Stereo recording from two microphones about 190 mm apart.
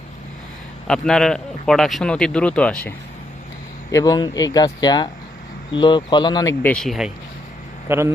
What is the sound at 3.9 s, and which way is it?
Speech, 20° left (ahead or behind).